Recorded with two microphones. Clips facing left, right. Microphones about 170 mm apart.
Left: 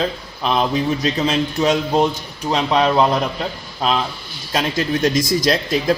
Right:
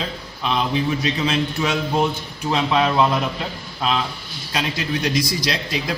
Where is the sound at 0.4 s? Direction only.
40° left (ahead or behind).